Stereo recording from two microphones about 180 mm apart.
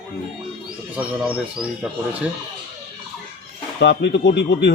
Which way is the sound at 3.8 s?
70° left (ahead or behind).